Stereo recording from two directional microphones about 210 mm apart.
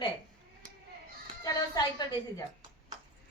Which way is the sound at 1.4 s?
20° left (ahead or behind).